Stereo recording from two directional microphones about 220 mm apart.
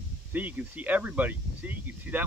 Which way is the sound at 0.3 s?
10° right (ahead or behind).